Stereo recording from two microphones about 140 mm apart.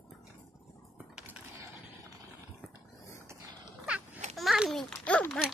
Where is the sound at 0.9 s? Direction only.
10° right (ahead or behind).